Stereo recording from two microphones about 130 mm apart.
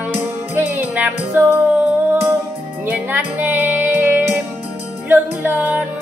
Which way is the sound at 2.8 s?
15° right (ahead or behind).